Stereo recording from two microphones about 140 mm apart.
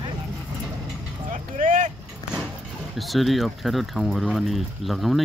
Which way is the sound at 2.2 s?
25° left (ahead or behind).